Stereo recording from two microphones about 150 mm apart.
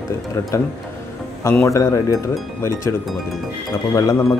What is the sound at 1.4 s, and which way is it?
Speech, 15° left (ahead or behind).